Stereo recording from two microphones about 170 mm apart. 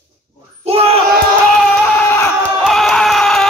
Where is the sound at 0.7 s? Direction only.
35° right (ahead or behind).